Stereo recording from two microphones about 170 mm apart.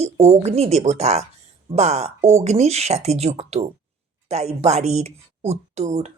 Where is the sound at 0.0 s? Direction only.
40° right (ahead or behind).